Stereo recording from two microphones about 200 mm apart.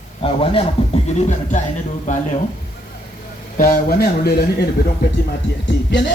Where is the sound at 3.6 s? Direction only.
45° left (ahead or behind).